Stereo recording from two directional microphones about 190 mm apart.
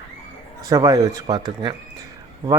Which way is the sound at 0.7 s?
20° right (ahead or behind).